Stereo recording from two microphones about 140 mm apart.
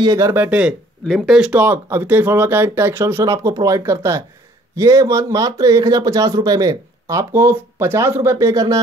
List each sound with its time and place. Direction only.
0.0 s speech: 25° right (ahead or behind)